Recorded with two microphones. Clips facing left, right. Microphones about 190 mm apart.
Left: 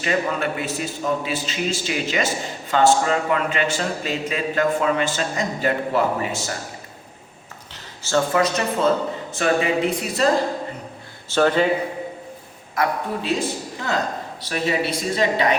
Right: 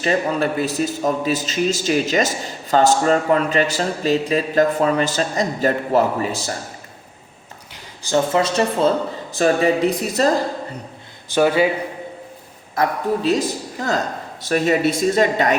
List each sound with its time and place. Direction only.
0.0 s a man's voice: 35° right (ahead or behind)
8.0 s a man's voice: 20° right (ahead or behind); by 10.2 s 40° right (ahead or behind)
11.3 s a man's voice: 10° right (ahead or behind)
13.2 s speech: 40° right (ahead or behind)